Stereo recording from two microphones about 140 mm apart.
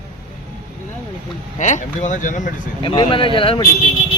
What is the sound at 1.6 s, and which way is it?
Speech, 60° left (ahead or behind).